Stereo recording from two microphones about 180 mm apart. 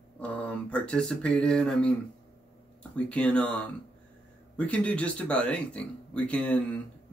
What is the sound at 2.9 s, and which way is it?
Speech, 5° left (ahead or behind).